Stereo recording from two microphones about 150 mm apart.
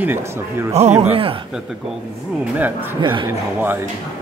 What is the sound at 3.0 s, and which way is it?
Speech, 30° right (ahead or behind).